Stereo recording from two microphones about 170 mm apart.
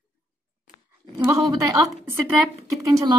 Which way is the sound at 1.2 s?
20° right (ahead or behind).